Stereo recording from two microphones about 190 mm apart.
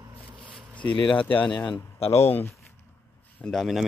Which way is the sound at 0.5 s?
5° left (ahead or behind).